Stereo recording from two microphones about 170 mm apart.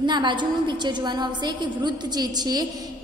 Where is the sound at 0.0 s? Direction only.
25° right (ahead or behind).